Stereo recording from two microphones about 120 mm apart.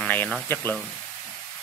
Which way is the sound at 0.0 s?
15° left (ahead or behind).